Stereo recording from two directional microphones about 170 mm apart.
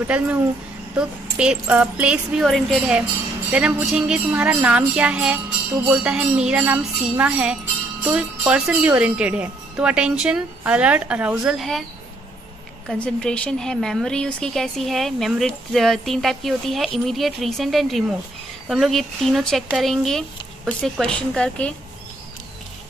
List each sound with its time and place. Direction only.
0.0 s a woman's voice: 10° right (ahead or behind)
13.0 s a woman's voice: 5° left (ahead or behind)